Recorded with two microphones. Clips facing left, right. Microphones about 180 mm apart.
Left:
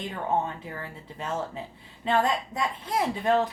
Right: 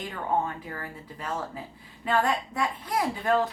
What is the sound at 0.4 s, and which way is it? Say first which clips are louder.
A woman's voice: even; 25° left (ahead or behind).